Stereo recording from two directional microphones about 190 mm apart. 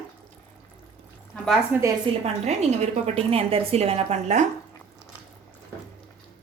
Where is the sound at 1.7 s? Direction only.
10° right (ahead or behind).